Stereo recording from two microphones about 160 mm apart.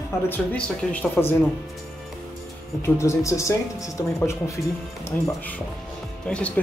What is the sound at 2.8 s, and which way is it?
Speech, 15° left (ahead or behind).